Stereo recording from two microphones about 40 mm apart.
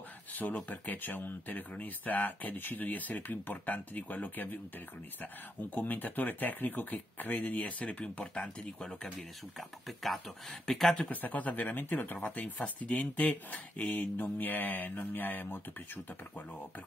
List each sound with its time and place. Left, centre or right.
0.3 s a sound: left
0.7 s speech: left
7.6 s speech: left
9.6 s speech: centre
11.1 s speech: left
12.6 s speech: left